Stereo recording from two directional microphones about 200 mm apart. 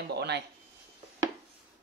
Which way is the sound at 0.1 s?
55° right (ahead or behind).